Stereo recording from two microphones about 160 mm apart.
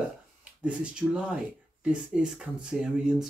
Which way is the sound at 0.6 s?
5° right (ahead or behind).